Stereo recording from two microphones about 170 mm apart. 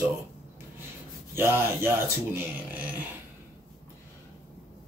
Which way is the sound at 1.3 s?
15° right (ahead or behind).